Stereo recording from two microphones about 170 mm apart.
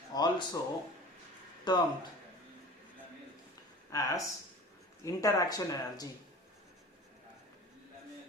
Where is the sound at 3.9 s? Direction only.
20° left (ahead or behind).